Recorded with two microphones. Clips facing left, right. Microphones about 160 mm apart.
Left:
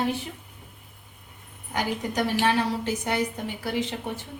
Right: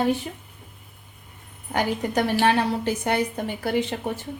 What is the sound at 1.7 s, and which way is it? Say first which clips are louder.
A woman's voice: right 4 dB; 60° right (ahead or behind).